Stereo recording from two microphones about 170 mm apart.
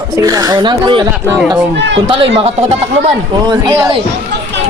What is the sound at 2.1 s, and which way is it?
A woman's voice, 35° right (ahead or behind).